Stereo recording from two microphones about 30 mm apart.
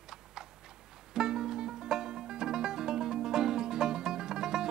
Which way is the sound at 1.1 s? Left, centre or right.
Centre.